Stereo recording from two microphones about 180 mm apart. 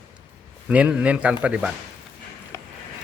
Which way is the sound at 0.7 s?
5° right (ahead or behind).